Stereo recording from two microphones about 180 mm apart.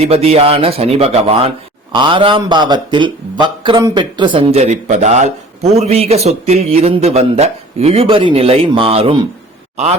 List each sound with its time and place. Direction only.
0.0 s a man's voice: 35° right (ahead or behind)